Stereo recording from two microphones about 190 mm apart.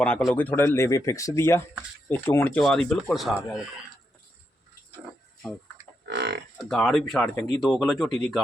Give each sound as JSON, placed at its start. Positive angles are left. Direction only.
{"t": 0.0, "sound": "speech", "side_deg": 5}
{"t": 6.1, "sound": "livestock", "side_deg": -60}
{"t": 6.7, "sound": "speech", "side_deg": 0}
{"t": 7.2, "sound": "speech", "side_deg": 10}
{"t": 7.6, "sound": "speech", "side_deg": 0}